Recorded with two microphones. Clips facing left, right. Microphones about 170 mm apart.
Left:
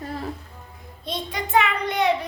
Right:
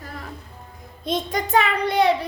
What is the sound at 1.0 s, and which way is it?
A child's voice, 45° right (ahead or behind).